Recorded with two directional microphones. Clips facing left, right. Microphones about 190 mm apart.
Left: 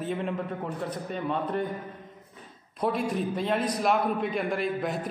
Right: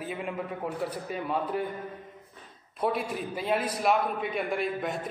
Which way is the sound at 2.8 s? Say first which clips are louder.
Left 2 dB; 5° right (ahead or behind).